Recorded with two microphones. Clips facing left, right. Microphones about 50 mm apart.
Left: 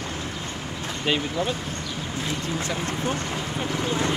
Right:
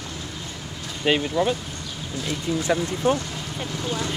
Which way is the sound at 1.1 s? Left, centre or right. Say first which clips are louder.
Right 4 dB; centre.